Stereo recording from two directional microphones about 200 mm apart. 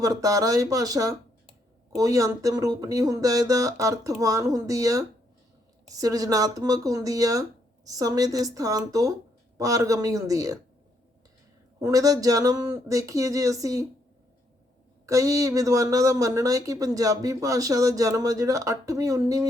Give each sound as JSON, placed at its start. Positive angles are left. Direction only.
{"t": 0.0, "sound": "speech", "side_deg": -15}
{"t": 11.8, "sound": "speech", "side_deg": -15}
{"t": 15.0, "sound": "speech", "side_deg": -15}